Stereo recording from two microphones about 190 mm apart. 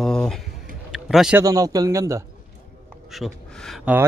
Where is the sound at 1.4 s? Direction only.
20° right (ahead or behind).